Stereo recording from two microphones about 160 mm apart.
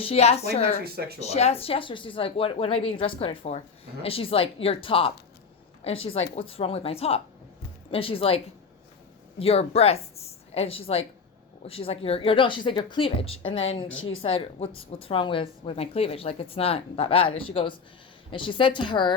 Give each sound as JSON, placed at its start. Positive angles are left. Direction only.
{"t": 0.0, "sound": "speech", "side_deg": 40}
{"t": 9.4, "sound": "speech", "side_deg": 40}